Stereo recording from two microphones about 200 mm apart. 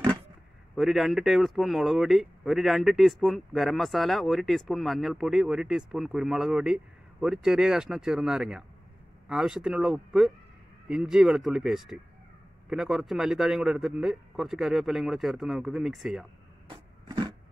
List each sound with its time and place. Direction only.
0.7 s speech: centre (ahead or behind)
16.6 s wood: 20° right (ahead or behind)